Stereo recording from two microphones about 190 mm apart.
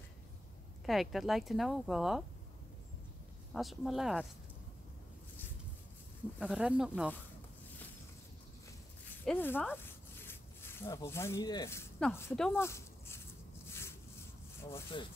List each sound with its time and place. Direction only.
0.8 s speech: centre (ahead or behind)
3.5 s speech: centre (ahead or behind)
6.4 s speech: 5° right (ahead or behind)
9.2 s speech: 10° left (ahead or behind)
12.6 s a sound: 15° left (ahead or behind)
14.9 s speech: 25° left (ahead or behind)